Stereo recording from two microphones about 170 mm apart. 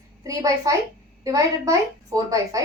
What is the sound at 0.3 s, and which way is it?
A woman's voice, 20° right (ahead or behind).